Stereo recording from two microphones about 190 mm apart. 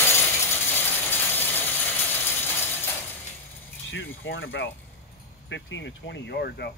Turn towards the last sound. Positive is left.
turn(degrees=60)  # may be behind; listen again after turning